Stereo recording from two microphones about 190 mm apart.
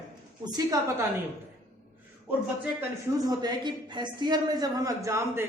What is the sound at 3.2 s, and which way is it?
A woman's voice, 20° right (ahead or behind).